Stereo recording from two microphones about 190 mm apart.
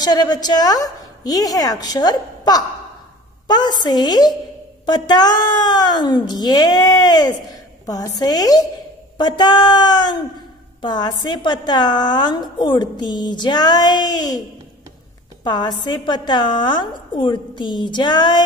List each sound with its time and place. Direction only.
0.0 s a woman's voice: 20° left (ahead or behind)
15.4 s a woman's voice: 20° left (ahead or behind)